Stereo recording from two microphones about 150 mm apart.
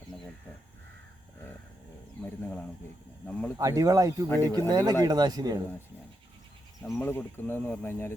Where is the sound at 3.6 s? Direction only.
20° right (ahead or behind).